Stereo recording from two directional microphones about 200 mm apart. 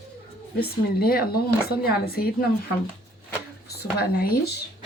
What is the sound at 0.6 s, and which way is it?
Speech, 50° left (ahead or behind).